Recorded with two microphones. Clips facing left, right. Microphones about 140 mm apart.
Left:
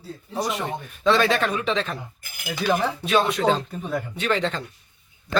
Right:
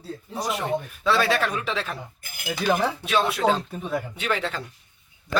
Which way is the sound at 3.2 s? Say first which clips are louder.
Left 1 dB; 5° right (ahead or behind).